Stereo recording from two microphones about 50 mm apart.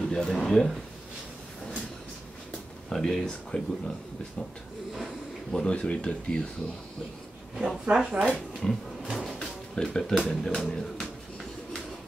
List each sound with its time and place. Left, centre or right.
0.1 s speech: centre
2.9 s speech: centre
5.5 s speech: centre
7.5 s speech: centre
8.2 s speech: centre
9.8 s speech: centre